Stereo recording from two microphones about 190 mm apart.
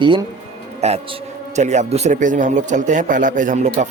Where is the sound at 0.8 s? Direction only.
35° right (ahead or behind).